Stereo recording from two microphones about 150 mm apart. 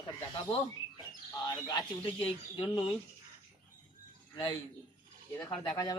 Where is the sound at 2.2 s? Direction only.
35° left (ahead or behind).